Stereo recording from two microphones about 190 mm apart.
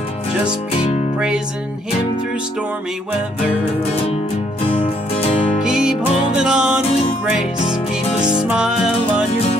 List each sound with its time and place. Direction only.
0.7 s music: 35° left (ahead or behind)
5.6 s music: 5° right (ahead or behind)
8.5 s music: 5° right (ahead or behind)
9.0 s music: 35° left (ahead or behind)